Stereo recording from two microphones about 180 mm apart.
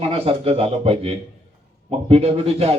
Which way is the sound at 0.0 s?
30° right (ahead or behind).